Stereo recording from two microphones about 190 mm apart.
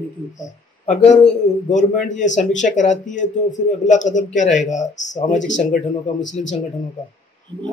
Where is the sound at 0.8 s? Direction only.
40° left (ahead or behind).